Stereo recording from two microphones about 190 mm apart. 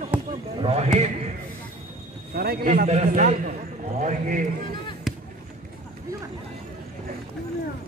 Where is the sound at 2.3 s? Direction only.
55° right (ahead or behind).